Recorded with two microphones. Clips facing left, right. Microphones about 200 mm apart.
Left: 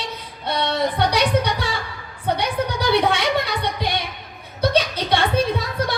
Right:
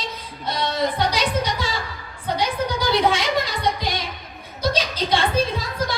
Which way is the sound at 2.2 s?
60° left (ahead or behind).